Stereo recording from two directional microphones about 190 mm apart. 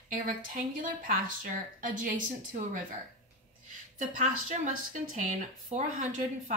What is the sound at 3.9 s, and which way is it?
A woman's voice, 40° right (ahead or behind).